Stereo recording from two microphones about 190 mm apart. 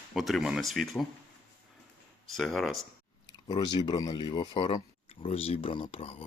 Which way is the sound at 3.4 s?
25° left (ahead or behind).